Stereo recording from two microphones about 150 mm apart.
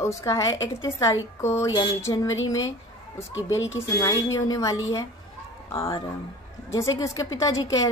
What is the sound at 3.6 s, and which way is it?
A woman's voice, 20° left (ahead or behind).